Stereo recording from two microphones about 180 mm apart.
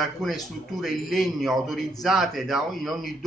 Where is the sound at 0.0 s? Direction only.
Centre (ahead or behind).